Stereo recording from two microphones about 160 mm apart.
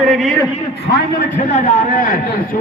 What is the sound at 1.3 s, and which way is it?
Speech, 55° left (ahead or behind).